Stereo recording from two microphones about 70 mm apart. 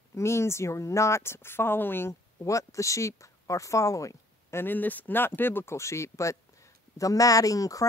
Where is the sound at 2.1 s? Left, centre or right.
Left.